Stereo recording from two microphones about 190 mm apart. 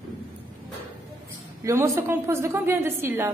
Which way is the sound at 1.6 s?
15° right (ahead or behind).